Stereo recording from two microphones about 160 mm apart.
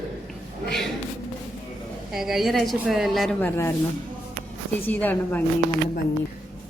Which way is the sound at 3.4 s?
15° left (ahead or behind).